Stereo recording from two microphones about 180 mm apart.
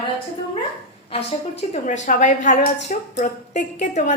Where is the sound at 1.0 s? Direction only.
35° left (ahead or behind).